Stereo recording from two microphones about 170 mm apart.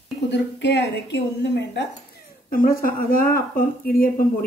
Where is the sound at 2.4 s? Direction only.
55° left (ahead or behind).